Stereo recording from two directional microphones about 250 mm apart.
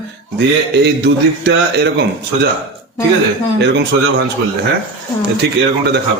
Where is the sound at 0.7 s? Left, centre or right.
Right.